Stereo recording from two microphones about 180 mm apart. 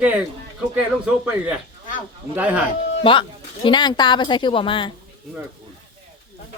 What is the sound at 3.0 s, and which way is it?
A woman's voice, 30° left (ahead or behind).